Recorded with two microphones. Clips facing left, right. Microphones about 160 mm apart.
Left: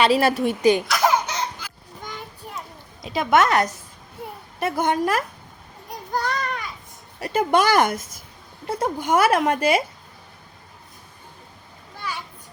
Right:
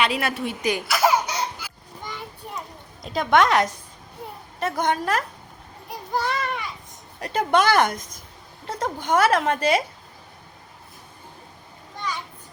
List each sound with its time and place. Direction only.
0.0 s a woman's voice: 35° left (ahead or behind)
0.9 s baby laughter: 10° right (ahead or behind)
2.6 s a child's voice: centre (ahead or behind)
5.9 s a sound: centre (ahead or behind)
7.2 s speech: 10° left (ahead or behind)
11.9 s children playing: 10° left (ahead or behind)